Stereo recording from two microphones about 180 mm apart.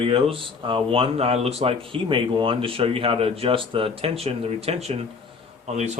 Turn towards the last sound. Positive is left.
turn(degrees=-40)  # may be behind; listen again after turning